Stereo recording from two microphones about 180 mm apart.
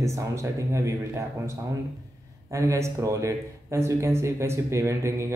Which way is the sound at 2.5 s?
15° right (ahead or behind).